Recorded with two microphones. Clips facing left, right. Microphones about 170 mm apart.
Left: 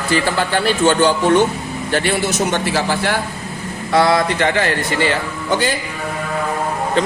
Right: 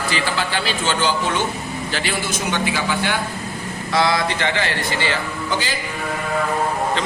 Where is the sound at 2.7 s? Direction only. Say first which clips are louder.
Left 4 dB; 35° left (ahead or behind).